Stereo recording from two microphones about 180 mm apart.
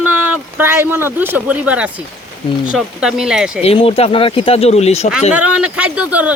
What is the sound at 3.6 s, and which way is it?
Speech, 30° left (ahead or behind).